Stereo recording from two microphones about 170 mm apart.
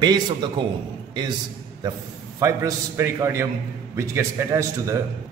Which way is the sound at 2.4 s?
15° right (ahead or behind).